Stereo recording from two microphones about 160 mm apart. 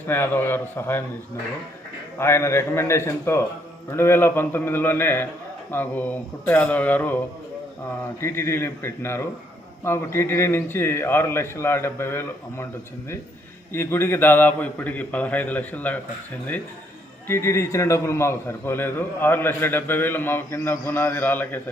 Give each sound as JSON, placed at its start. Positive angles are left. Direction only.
{"t": 0.1, "sound": "a man's voice", "side_deg": 15}
{"t": 2.1, "sound": "a man's voice", "side_deg": 15}
{"t": 8.2, "sound": "a man's voice", "side_deg": 15}
{"t": 13.7, "sound": "a man's voice", "side_deg": 15}
{"t": 17.2, "sound": "a man's voice", "side_deg": 15}